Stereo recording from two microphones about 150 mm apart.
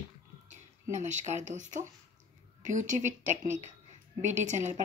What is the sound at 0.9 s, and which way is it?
A woman's voice, 50° right (ahead or behind).